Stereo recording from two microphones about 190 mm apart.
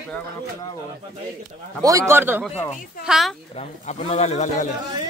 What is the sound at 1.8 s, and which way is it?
Speech, 15° right (ahead or behind).